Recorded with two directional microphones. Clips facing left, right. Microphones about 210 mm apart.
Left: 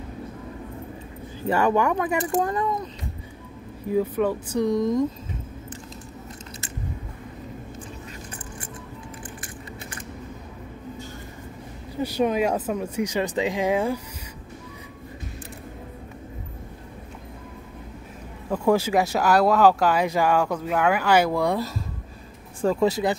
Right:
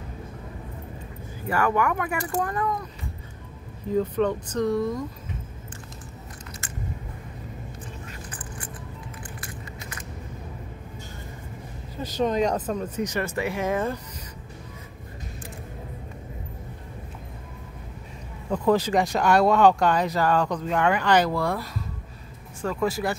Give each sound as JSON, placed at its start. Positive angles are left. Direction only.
{"t": 1.5, "sound": "speech", "side_deg": 25}
{"t": 3.9, "sound": "speech", "side_deg": 10}
{"t": 12.0, "sound": "speech", "side_deg": 10}
{"t": 18.5, "sound": "speech", "side_deg": 10}
{"t": 22.6, "sound": "speech", "side_deg": 30}